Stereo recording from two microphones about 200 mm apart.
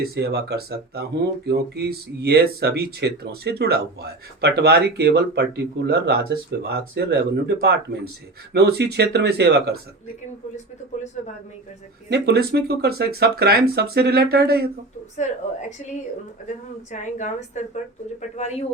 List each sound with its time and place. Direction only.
0.0 s speech: 55° right (ahead or behind)
12.1 s speech: 55° right (ahead or behind)
16.9 s a woman's voice: 35° left (ahead or behind)